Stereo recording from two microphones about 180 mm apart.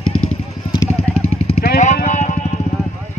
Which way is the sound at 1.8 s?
45° left (ahead or behind).